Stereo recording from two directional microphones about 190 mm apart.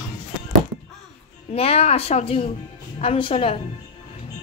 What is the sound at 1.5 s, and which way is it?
Speech, 30° left (ahead or behind).